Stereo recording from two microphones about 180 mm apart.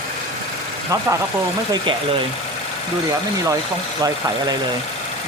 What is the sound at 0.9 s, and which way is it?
Speech, 20° right (ahead or behind).